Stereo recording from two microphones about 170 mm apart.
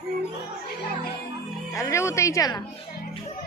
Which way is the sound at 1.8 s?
15° left (ahead or behind).